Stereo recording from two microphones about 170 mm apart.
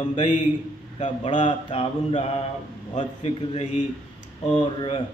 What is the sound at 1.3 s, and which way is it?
Mantra, 30° left (ahead or behind).